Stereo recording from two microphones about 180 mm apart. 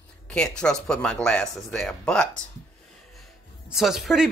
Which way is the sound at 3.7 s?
Centre (ahead or behind).